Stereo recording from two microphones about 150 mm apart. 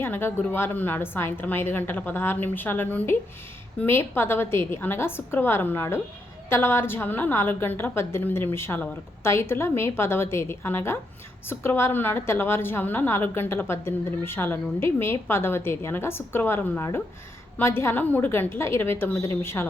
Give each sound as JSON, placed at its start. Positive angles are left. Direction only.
{"t": 0.0, "sound": "a woman's voice", "side_deg": 15}